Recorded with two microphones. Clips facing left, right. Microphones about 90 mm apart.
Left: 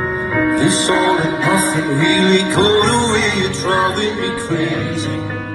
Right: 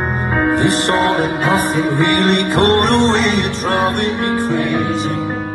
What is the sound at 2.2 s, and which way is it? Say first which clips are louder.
Music: left 1 dB; 45° right (ahead or behind).